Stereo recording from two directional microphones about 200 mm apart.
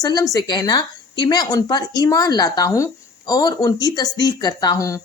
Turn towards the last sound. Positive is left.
turn(degrees=15)  # may be behind; listen again after turning